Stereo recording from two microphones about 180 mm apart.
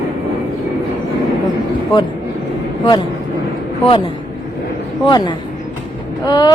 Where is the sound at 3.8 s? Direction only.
30° left (ahead or behind).